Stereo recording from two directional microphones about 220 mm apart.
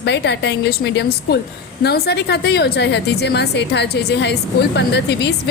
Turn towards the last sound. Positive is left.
turn(degrees=50)  # may be behind; listen again after turning